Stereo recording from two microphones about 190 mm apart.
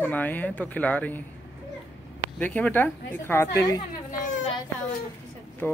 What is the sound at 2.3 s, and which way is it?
Speech, 10° left (ahead or behind).